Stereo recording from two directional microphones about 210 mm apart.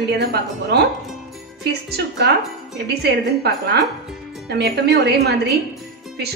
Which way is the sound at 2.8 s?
50° right (ahead or behind).